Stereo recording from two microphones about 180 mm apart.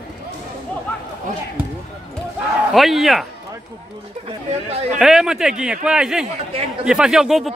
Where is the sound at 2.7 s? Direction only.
Centre (ahead or behind).